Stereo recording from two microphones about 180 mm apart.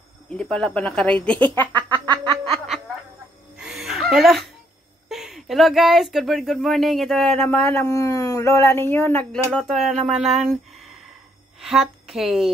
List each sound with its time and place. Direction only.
0.3 s speech: 5° left (ahead or behind)
2.2 s snicker: 30° right (ahead or behind)
3.5 s laughter: 5° right (ahead or behind)
5.1 s a woman's voice: centre (ahead or behind)